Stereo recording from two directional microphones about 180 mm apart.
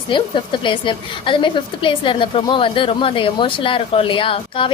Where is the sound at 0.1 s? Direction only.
25° left (ahead or behind).